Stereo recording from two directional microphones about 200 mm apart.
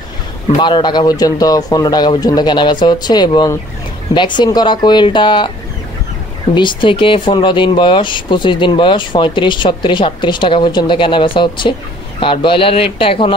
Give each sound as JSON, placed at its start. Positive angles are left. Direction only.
{"t": 0.6, "sound": "speech", "side_deg": 25}
{"t": 6.5, "sound": "speech", "side_deg": 25}